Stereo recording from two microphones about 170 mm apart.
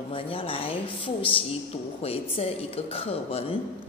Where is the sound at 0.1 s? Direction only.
30° left (ahead or behind).